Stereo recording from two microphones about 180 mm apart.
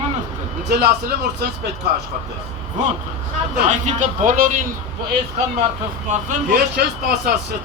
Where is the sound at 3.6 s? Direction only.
45° right (ahead or behind).